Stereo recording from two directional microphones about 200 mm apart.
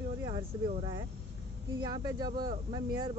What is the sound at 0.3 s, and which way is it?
Speech, 25° right (ahead or behind).